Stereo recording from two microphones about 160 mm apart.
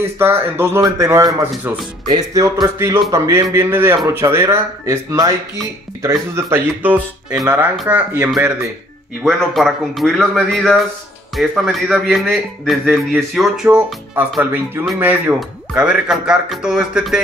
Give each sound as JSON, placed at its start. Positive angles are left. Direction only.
{"t": 0.2, "sound": "speech", "side_deg": -15}
{"t": 9.2, "sound": "a man's voice", "side_deg": 0}